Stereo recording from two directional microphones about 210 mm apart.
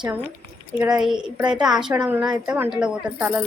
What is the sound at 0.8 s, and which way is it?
A woman's voice, 5° right (ahead or behind).